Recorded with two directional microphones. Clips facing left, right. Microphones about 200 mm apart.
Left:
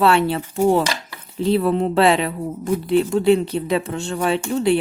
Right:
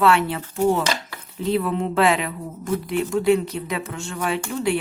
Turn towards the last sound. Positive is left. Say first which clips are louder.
# left 5 dB
turn(degrees=30)  # may be behind; listen again after turning